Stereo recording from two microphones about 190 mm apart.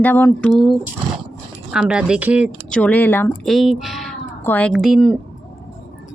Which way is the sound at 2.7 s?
5° left (ahead or behind).